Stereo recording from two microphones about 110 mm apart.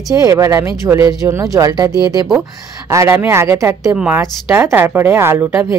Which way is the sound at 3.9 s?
10° right (ahead or behind).